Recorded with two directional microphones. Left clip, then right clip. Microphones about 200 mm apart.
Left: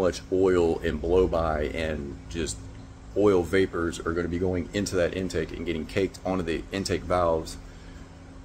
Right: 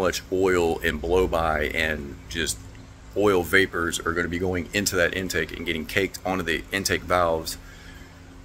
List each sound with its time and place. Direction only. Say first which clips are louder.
0.0 s speech: right 1 dB; 5° left (ahead or behind)